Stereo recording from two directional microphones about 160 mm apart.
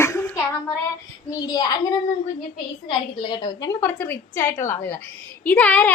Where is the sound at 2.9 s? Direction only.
30° left (ahead or behind).